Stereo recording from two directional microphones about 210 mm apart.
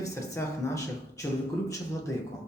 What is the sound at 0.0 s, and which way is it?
A man's voice, 15° left (ahead or behind).